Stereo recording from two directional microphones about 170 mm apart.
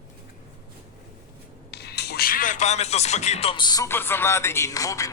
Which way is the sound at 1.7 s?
75° left (ahead or behind).